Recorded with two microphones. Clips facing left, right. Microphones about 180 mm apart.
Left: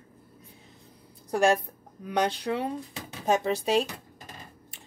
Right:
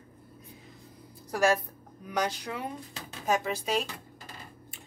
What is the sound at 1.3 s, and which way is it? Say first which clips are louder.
A woman's voice: left 3 dB; 25° left (ahead or behind).